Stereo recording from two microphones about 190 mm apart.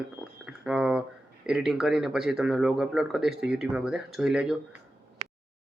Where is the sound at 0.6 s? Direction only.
5° right (ahead or behind).